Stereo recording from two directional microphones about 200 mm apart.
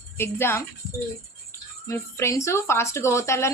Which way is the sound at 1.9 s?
15° left (ahead or behind).